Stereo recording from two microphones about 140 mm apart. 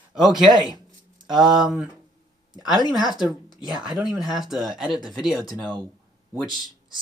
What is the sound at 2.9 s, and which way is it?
Speech, centre (ahead or behind).